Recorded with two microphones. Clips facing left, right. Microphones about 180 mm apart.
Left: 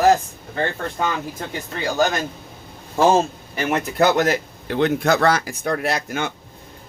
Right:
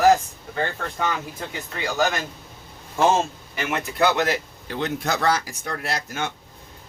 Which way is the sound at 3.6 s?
40° left (ahead or behind).